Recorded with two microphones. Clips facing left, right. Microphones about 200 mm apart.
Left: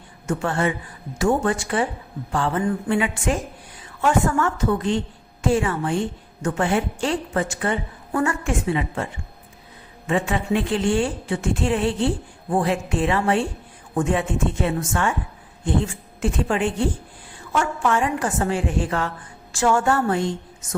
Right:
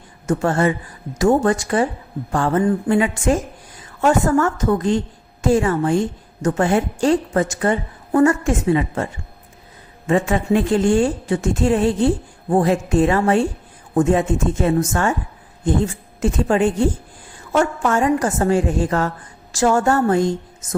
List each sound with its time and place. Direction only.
0.3 s a woman's voice: 40° right (ahead or behind)
10.1 s a woman's voice: 40° right (ahead or behind)